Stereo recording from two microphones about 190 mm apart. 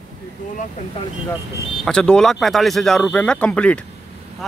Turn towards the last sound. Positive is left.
turn(degrees=5)  # may be behind; listen again after turning